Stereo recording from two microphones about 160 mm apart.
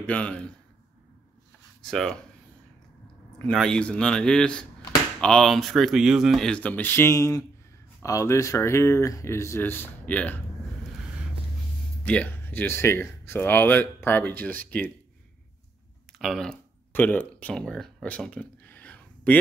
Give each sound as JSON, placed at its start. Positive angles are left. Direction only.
{"t": 0.0, "sound": "speech", "side_deg": 5}
{"t": 1.9, "sound": "speech", "side_deg": 5}
{"t": 3.4, "sound": "speech", "side_deg": 5}
{"t": 12.0, "sound": "speech", "side_deg": 10}
{"t": 16.1, "sound": "a sound", "side_deg": 0}